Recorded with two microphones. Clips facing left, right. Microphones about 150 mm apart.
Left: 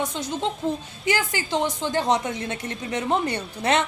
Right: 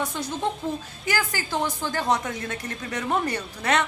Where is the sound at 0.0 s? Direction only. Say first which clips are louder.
Left 1 dB; 20° left (ahead or behind).